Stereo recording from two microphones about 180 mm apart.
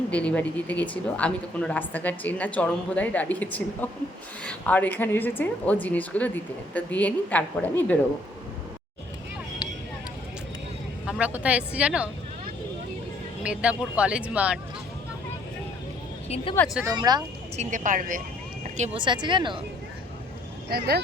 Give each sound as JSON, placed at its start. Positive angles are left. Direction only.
{"t": 0.1, "sound": "a woman's voice", "side_deg": 5}
{"t": 11.0, "sound": "speech", "side_deg": -5}
{"t": 13.4, "sound": "speech", "side_deg": -5}
{"t": 16.3, "sound": "speech", "side_deg": 30}
{"t": 16.8, "sound": "speech", "side_deg": -20}
{"t": 17.6, "sound": "speech", "side_deg": -45}
{"t": 18.9, "sound": "speech", "side_deg": -25}
{"t": 20.7, "sound": "speech", "side_deg": -60}